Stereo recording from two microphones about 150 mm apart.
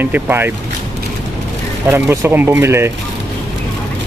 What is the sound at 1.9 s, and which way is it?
Speech, 15° right (ahead or behind).